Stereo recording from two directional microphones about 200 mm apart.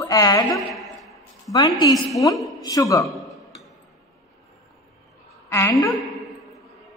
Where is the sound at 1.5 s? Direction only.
20° left (ahead or behind).